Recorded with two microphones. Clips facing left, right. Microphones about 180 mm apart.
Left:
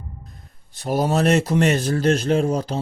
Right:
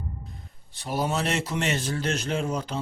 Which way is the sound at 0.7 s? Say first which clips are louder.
Left 7 dB; 45° left (ahead or behind).